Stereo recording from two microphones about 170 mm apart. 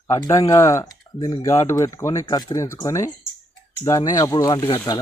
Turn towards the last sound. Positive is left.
turn(degrees=20)  # may be behind; listen again after turning